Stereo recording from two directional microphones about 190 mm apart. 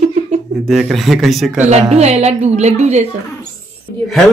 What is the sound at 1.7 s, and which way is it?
A woman's voice, 35° right (ahead or behind).